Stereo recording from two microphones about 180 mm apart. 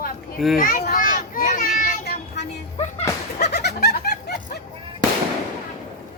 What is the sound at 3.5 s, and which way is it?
Snicker, 65° left (ahead or behind).